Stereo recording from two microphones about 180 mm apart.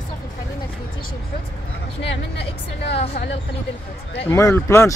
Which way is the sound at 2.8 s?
35° left (ahead or behind).